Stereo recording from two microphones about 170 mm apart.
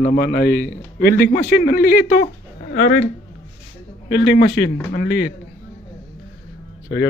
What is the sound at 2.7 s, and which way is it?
Speech, 90° left.